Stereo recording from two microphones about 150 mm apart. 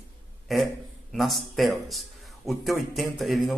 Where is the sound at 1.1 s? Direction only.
Centre (ahead or behind).